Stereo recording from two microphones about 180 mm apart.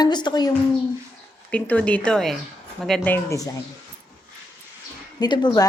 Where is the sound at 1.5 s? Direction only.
5° left (ahead or behind).